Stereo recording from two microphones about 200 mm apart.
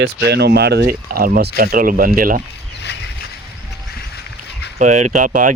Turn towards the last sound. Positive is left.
turn(degrees=-40)  # may be behind; listen again after turning